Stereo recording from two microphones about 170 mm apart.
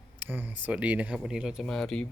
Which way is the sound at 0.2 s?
10° right (ahead or behind).